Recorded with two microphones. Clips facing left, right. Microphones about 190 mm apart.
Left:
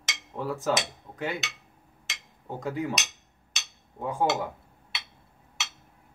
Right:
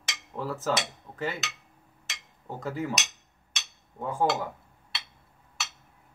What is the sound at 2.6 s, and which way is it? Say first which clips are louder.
Dishes: left 1 dB; centre (ahead or behind).